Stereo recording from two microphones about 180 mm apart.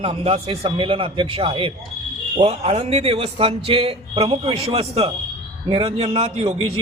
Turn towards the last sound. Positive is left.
turn(degrees=-30)  # may be behind; listen again after turning